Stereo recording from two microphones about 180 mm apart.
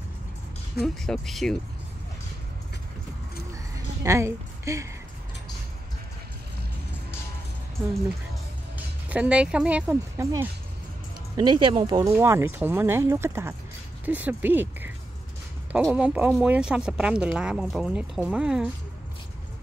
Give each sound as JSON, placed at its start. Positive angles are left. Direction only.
{"t": 0.8, "sound": "speech", "side_deg": 0}
{"t": 3.7, "sound": "a sound", "side_deg": -15}
{"t": 8.7, "sound": "speech", "side_deg": -10}
{"t": 11.3, "sound": "speech", "side_deg": -25}
{"t": 12.1, "sound": "speech", "side_deg": -15}